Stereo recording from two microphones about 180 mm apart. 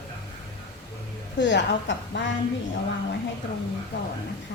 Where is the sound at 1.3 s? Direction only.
80° left.